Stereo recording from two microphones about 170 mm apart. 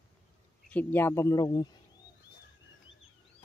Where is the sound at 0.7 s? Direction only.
10° left (ahead or behind).